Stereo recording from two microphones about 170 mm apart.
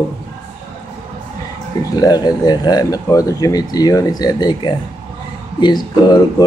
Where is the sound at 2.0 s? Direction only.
25° left (ahead or behind).